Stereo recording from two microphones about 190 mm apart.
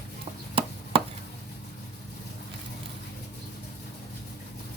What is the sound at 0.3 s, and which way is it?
Chopping, 35° right (ahead or behind).